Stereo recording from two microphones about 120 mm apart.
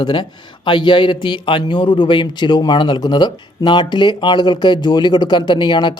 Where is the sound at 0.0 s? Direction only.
40° left (ahead or behind).